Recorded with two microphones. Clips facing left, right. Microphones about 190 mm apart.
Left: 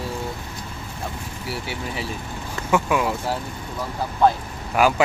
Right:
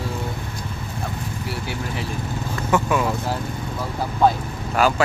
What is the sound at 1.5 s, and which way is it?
Speech, 5° left (ahead or behind).